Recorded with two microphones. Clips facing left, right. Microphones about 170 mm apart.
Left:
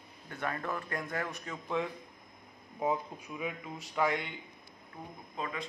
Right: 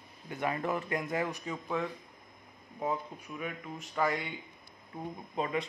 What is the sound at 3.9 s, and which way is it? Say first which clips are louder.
Speech: even; centre (ahead or behind).